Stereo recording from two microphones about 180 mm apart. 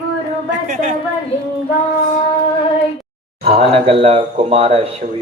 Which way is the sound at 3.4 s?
30° right (ahead or behind).